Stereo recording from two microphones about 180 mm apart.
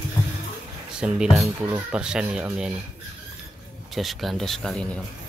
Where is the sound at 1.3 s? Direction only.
15° right (ahead or behind).